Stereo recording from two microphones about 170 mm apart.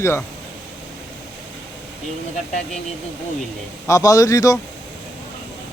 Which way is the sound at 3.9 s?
20° left (ahead or behind).